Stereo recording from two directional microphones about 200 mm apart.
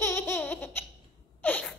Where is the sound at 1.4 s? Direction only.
5° left (ahead or behind).